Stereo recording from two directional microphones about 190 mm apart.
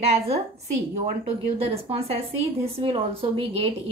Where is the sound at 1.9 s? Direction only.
30° right (ahead or behind).